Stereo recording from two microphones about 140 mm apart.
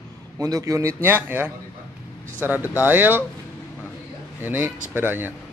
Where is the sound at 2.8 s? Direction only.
15° right (ahead or behind).